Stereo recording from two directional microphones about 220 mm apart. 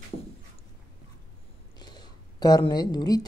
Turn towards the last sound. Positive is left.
turn(degrees=20)  # may be behind; listen again after turning